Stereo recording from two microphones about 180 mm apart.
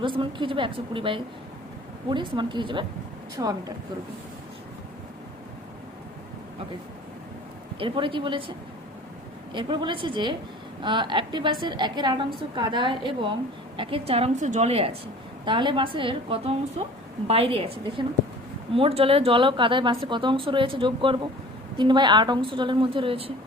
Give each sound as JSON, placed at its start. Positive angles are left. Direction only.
{"t": 0.0, "sound": "a woman's voice", "side_deg": -25}
{"t": 7.8, "sound": "a woman's voice", "side_deg": -30}